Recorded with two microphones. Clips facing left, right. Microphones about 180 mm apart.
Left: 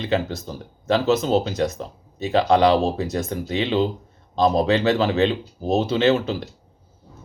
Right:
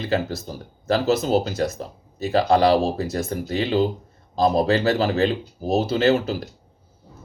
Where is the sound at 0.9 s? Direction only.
40° right (ahead or behind).